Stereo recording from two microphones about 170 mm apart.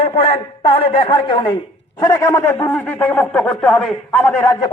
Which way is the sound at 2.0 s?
15° left (ahead or behind).